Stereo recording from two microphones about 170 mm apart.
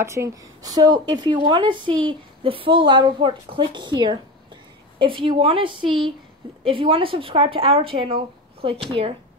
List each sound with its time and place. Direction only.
0.0 s speech: 15° right (ahead or behind); by 9.1 s 35° right (ahead or behind)